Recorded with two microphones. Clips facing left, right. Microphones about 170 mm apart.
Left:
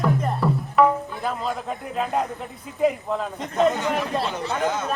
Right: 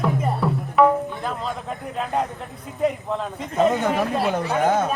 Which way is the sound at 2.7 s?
Centre (ahead or behind).